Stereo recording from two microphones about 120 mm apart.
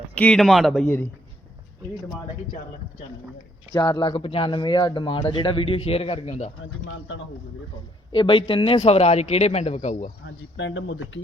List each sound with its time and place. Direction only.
0.1 s a man's voice: 10° left (ahead or behind)
3.8 s speech: 25° left (ahead or behind)
4.0 s speech: 45° left (ahead or behind)
8.1 s speech: 45° left (ahead or behind)
8.8 s speech: 60° left (ahead or behind)